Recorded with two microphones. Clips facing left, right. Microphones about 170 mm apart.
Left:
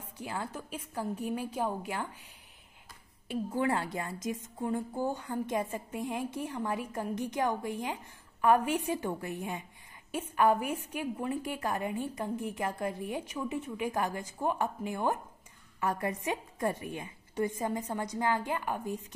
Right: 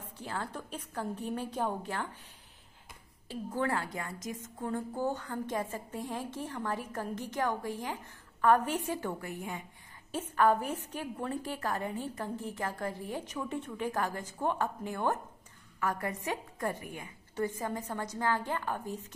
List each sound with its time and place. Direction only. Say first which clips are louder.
0.2 s a woman's voice: left 1 dB; 15° left (ahead or behind)
3.3 s a woman's voice: left 3 dB; 15° left (ahead or behind)
4.6 s a woman's voice: even; 10° left (ahead or behind)